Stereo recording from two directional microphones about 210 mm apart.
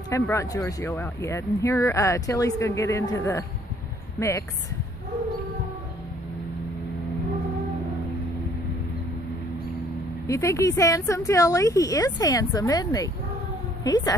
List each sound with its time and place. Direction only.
0.1 s speech: 15° left (ahead or behind)
10.2 s speech: 15° left (ahead or behind)